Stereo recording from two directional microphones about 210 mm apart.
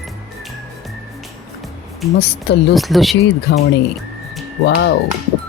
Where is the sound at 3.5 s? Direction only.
55° left (ahead or behind).